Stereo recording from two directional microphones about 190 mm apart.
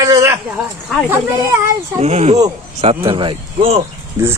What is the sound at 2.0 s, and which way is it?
Speech, 35° right (ahead or behind).